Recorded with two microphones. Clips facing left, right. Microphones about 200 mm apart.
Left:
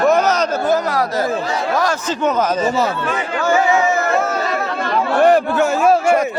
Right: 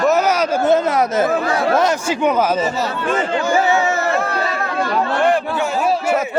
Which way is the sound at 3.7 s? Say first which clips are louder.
Left 1 dB; centre (ahead or behind).